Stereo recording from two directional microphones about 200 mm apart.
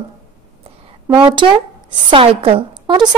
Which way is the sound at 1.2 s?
25° right (ahead or behind).